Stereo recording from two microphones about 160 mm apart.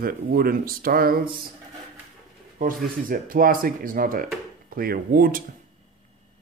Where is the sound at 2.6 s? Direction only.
60° right (ahead or behind).